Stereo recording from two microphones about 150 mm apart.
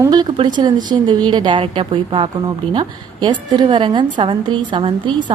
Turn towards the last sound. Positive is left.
turn(degrees=-35)  # may be behind; listen again after turning